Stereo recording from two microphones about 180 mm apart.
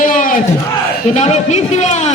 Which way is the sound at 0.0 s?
50° left (ahead or behind).